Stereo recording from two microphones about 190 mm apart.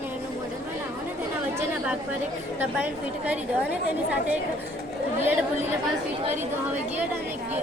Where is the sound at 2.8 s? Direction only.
5° right (ahead or behind).